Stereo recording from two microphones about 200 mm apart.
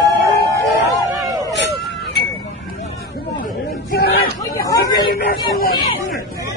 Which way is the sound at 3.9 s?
50° left (ahead or behind).